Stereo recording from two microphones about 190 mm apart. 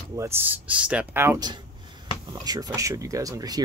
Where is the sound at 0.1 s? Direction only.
15° right (ahead or behind).